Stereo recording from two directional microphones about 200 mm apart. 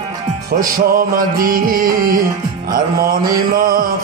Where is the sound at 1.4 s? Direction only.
45° right (ahead or behind).